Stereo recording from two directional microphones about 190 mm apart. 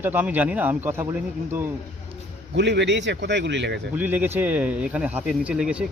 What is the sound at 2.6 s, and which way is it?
Speech, 65° right (ahead or behind).